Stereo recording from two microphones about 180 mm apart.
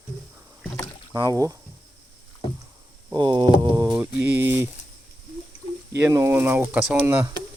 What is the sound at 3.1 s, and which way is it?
Speech, 25° right (ahead or behind).